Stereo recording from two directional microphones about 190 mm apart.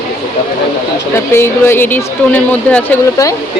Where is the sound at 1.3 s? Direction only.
10° left (ahead or behind).